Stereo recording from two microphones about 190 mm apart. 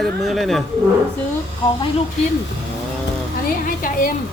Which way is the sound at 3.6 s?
45° left (ahead or behind).